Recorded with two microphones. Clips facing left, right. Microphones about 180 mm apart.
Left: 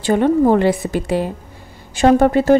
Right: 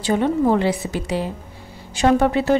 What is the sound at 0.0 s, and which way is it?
A woman's voice, 55° left (ahead or behind).